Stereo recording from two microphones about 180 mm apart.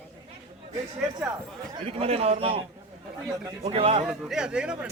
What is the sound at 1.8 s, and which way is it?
A man's voice, 35° right (ahead or behind).